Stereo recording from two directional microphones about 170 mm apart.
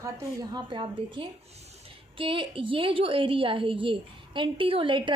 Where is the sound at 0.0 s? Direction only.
20° right (ahead or behind).